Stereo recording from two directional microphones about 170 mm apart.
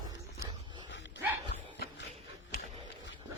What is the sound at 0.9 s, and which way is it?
Dog, 90° left.